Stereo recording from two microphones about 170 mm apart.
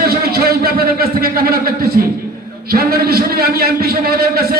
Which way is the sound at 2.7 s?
65° right (ahead or behind).